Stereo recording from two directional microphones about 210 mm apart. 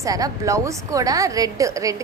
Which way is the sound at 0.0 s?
15° right (ahead or behind).